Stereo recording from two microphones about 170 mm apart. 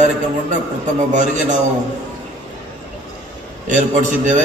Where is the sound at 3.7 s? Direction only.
45° right (ahead or behind).